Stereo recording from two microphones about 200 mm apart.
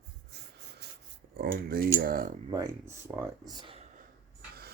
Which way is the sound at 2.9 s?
15° right (ahead or behind).